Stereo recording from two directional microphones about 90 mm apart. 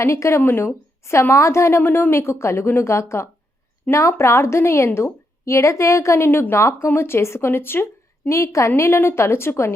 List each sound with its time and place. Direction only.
0.0 s a woman's voice: 35° left (ahead or behind)
8.4 s a woman's voice: 35° left (ahead or behind)